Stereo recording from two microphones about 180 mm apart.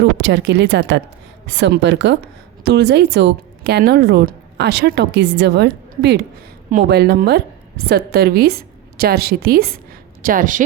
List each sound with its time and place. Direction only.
0.2 s a woman's voice: 80° right
2.6 s a woman's voice: 70° right (ahead or behind)
10.2 s speech: 50° right (ahead or behind)